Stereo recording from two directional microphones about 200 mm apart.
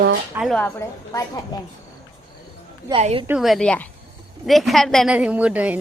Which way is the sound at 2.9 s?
30° right (ahead or behind).